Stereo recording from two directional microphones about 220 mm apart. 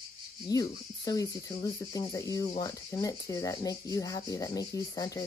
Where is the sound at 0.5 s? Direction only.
15° left (ahead or behind).